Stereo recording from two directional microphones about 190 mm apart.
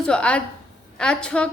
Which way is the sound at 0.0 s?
5° left (ahead or behind).